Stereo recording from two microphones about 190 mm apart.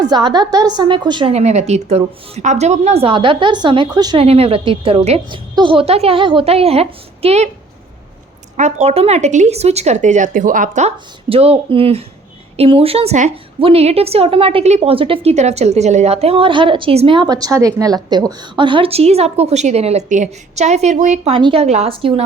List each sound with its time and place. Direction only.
0.0 s a woman's voice: 20° right (ahead or behind)
8.5 s a woman's voice: 35° right (ahead or behind)
21.3 s a woman's voice: 30° right (ahead or behind)